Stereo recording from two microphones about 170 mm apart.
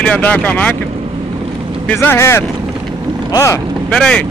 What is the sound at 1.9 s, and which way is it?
Speech, 10° left (ahead or behind).